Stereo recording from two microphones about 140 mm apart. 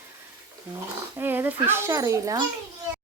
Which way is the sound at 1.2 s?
15° right (ahead or behind).